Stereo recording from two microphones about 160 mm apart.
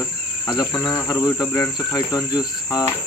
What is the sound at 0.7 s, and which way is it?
Cricket, 10° left (ahead or behind).